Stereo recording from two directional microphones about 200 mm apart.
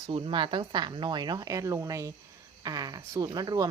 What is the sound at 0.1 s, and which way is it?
Speech, 25° right (ahead or behind).